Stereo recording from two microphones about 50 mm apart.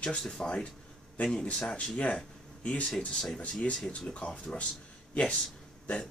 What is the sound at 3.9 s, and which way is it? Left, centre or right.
A man's voice, left.